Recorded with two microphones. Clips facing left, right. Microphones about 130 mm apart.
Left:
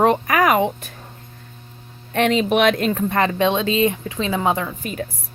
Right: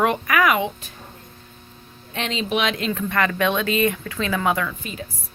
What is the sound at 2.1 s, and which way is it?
Speech, 55° left (ahead or behind).